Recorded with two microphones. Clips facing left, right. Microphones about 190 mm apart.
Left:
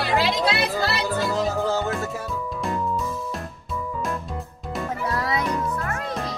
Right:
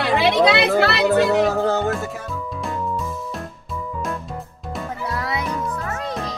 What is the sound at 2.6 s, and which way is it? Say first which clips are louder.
Music: even; centre (ahead or behind).